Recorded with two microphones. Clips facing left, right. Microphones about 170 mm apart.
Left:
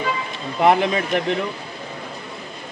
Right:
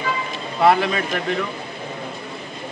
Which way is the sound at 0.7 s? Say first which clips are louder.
Even; 20° left (ahead or behind).